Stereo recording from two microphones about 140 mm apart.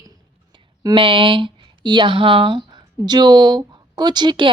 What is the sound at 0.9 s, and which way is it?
Speech, 35° right (ahead or behind).